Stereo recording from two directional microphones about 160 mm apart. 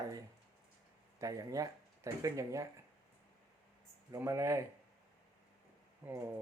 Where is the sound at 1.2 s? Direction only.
20° right (ahead or behind).